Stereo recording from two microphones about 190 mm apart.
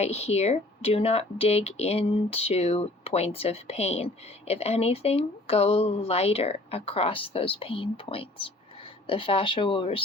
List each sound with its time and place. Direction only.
0.0 s speech: 35° left (ahead or behind)